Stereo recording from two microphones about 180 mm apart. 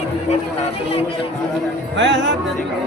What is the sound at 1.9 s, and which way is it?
Music, 80° right.